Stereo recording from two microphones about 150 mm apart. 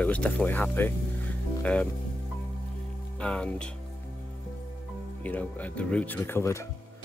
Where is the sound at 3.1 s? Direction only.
5° left (ahead or behind).